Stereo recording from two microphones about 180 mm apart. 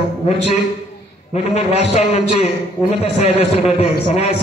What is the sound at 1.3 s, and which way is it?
A man's voice, 35° left (ahead or behind).